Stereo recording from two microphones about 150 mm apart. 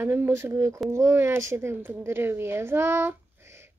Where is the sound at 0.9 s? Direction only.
20° right (ahead or behind).